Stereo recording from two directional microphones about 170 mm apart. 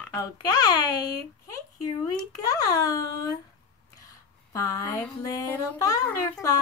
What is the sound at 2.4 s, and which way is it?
Speech, 20° left (ahead or behind).